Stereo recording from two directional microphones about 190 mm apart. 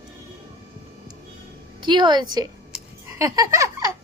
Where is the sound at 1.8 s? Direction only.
25° right (ahead or behind).